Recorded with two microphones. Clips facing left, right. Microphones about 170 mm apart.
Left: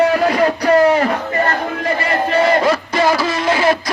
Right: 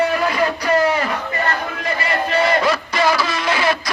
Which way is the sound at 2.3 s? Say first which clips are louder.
Left 3 dB; 40° left (ahead or behind).